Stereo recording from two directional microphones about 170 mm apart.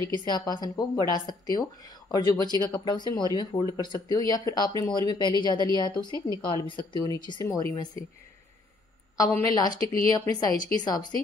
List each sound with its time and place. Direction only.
0.0 s speech: 25° left (ahead or behind)
9.1 s a woman's voice: 20° left (ahead or behind)